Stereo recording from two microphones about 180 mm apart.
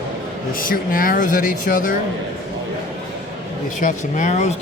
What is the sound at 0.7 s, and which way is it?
Speech, 50° left (ahead or behind).